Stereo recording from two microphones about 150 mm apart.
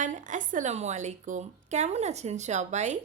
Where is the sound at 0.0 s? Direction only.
55° right (ahead or behind).